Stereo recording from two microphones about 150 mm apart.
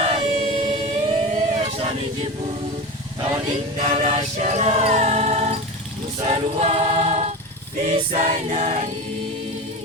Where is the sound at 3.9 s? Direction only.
45° right (ahead or behind).